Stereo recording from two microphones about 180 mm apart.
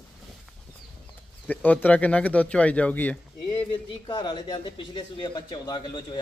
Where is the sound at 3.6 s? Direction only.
25° left (ahead or behind).